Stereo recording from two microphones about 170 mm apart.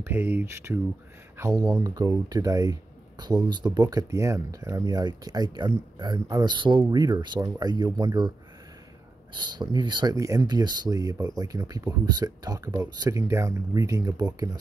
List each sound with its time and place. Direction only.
0.0 s speech: 10° right (ahead or behind)
9.3 s speech: 25° right (ahead or behind)